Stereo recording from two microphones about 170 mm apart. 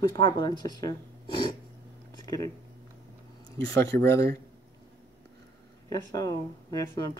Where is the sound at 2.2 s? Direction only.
20° left (ahead or behind).